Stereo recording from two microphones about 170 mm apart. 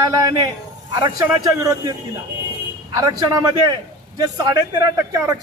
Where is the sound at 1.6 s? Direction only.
20° right (ahead or behind).